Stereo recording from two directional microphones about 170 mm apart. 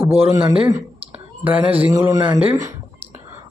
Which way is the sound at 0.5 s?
35° right (ahead or behind).